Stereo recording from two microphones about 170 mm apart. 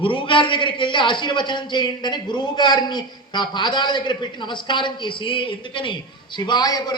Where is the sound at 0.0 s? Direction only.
30° left (ahead or behind).